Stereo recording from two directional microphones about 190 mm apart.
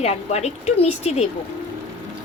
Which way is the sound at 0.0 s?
35° left (ahead or behind).